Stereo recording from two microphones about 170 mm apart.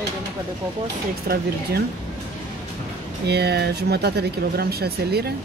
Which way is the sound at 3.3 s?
75° right (ahead or behind).